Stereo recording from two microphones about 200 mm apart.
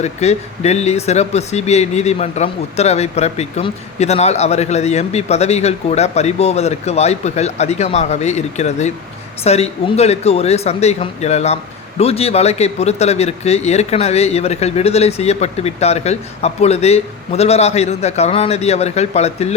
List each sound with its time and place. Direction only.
0.0 s speech: 35° left (ahead or behind)